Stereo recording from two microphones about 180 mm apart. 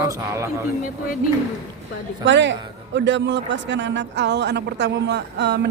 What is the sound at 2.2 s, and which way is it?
A man's voice, 85° right.